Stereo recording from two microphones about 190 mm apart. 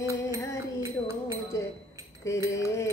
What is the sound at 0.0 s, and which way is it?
Music, 15° right (ahead or behind).